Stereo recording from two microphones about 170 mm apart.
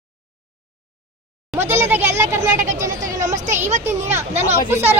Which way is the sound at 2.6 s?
45° right (ahead or behind).